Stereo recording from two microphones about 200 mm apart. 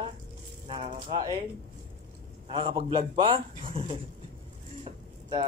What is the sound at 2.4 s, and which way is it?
A man's voice, 25° right (ahead or behind).